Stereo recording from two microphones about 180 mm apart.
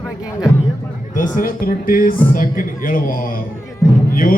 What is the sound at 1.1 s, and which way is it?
A man's voice, 50° left (ahead or behind).